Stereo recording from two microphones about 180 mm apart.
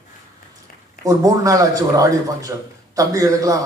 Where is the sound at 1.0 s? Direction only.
20° right (ahead or behind).